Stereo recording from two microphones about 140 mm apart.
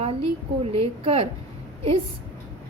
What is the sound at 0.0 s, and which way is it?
A woman's voice, 45° right (ahead or behind).